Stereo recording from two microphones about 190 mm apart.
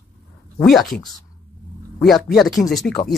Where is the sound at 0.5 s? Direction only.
Centre (ahead or behind).